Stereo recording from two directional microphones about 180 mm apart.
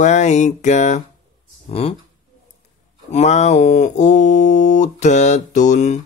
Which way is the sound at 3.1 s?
40° left (ahead or behind).